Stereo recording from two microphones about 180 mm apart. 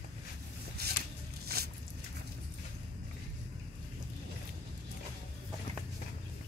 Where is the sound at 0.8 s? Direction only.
60° right (ahead or behind).